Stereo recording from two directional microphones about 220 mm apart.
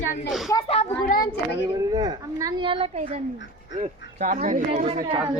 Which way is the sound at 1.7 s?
15° right (ahead or behind).